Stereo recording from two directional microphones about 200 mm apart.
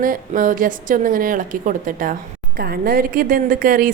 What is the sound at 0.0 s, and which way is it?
A woman's voice, 40° right (ahead or behind).